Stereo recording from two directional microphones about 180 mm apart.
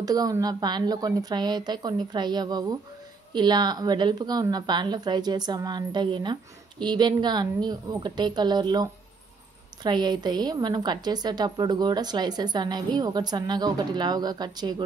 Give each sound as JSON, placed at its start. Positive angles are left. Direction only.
{"t": 0.0, "sound": "a woman's voice", "side_deg": -20}